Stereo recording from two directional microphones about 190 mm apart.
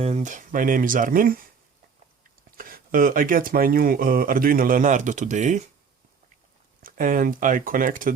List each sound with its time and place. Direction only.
0.0 s speech: 35° right (ahead or behind)
2.6 s speech: 50° right (ahead or behind)
6.8 s speech: 45° right (ahead or behind)